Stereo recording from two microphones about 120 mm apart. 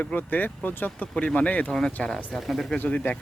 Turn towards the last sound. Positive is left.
turn(degrees=10)  # may be behind; listen again after turning